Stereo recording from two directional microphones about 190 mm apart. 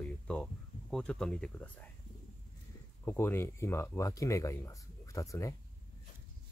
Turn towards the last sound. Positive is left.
turn(degrees=15)  # may be behind; listen again after turning